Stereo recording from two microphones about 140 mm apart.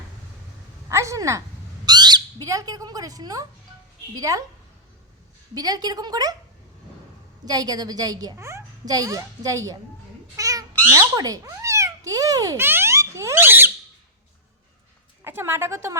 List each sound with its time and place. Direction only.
0.9 s a woman's voice: 20° right (ahead or behind)
5.5 s a child's voice: 30° right (ahead or behind)
7.4 s a child's voice: 25° right (ahead or behind)
10.3 s cat: 25° right (ahead or behind)
15.2 s a woman's voice: 15° right (ahead or behind)